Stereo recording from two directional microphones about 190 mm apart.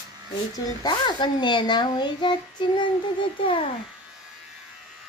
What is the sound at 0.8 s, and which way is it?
A child's voice, 25° left (ahead or behind).